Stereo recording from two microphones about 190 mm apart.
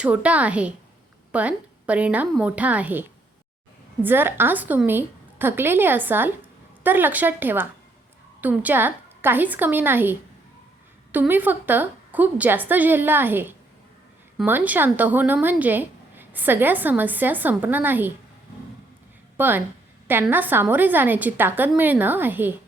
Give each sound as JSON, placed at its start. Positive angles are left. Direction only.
{"t": 0.0, "sound": "speech", "side_deg": -5}
{"t": 19.4, "sound": "speech", "side_deg": -10}